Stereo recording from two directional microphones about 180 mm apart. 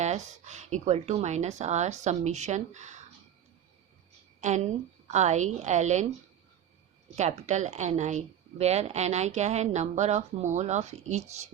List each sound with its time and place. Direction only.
0.0 s a woman's voice: 40° right (ahead or behind)
4.4 s a woman's voice: 40° right (ahead or behind)
7.2 s a woman's voice: 40° right (ahead or behind)